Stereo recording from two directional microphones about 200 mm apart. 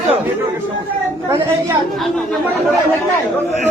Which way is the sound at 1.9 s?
Centre (ahead or behind).